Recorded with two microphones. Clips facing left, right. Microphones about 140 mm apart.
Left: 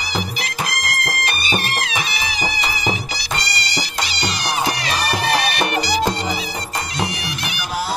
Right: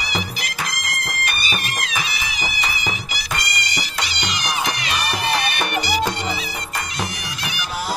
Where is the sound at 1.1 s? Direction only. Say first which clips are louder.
Left 3 dB; 30° left (ahead or behind).